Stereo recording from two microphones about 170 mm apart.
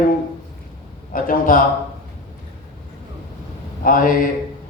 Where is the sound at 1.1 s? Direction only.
55° left (ahead or behind).